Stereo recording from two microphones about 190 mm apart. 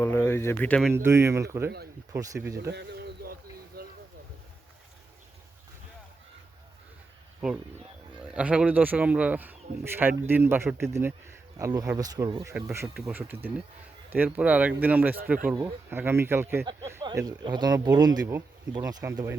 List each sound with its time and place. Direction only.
0.0 s speech: 10° left (ahead or behind)
0.9 s speech: 15° right (ahead or behind)
2.6 s a sound: 60° right (ahead or behind)
8.3 s speech: 5° right (ahead or behind)
16.6 s speech: 25° right (ahead or behind)